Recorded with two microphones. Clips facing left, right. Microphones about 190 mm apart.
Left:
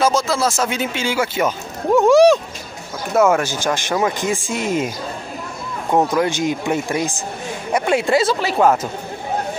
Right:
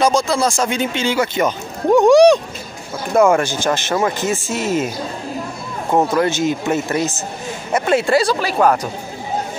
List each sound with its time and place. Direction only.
0.0 s speech: 5° left (ahead or behind)
6.1 s speech: 15° left (ahead or behind)